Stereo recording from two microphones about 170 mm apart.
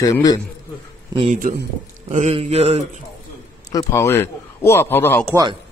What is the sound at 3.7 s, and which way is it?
A man's voice, 15° left (ahead or behind).